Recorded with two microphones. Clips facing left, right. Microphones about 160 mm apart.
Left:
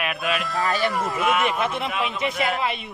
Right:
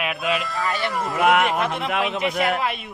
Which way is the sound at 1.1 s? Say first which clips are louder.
Right 8 dB; 70° right (ahead or behind).